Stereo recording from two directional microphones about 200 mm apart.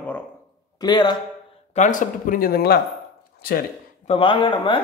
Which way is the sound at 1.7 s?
40° left (ahead or behind).